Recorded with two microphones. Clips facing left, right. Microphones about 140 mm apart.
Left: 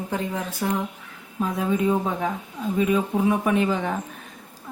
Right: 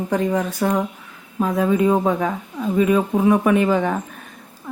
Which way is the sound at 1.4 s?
90° right.